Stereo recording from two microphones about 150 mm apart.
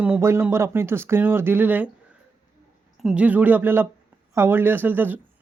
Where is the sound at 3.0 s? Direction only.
5° right (ahead or behind).